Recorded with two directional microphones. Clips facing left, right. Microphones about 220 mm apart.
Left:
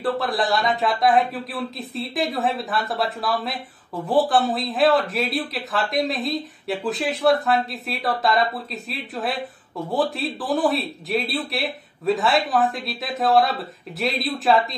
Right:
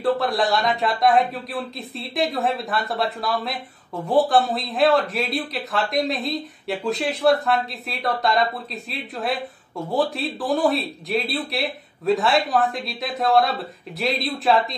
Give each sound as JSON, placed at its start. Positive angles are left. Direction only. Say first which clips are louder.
{"t": 0.0, "sound": "a man's voice", "louder": "right 2 dB", "side_deg": 0}